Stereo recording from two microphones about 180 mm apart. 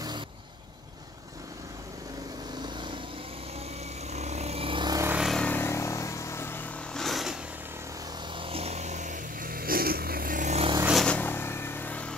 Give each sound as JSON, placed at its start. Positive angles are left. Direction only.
{"t": 4.1, "sound": "vehicle", "side_deg": -40}
{"t": 5.1, "sound": "vehicle", "side_deg": 0}
{"t": 8.4, "sound": "vehicle", "side_deg": -30}
{"t": 10.8, "sound": "vehicle", "side_deg": -5}
{"t": 11.1, "sound": "vehicle", "side_deg": 10}